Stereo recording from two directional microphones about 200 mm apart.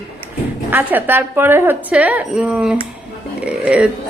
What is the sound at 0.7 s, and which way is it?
A woman's voice, 10° right (ahead or behind).